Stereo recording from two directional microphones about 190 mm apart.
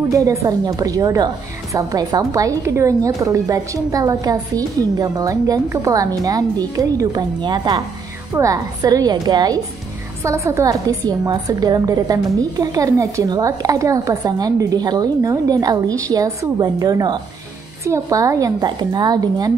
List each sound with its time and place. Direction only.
0.1 s a woman's voice: 15° right (ahead or behind)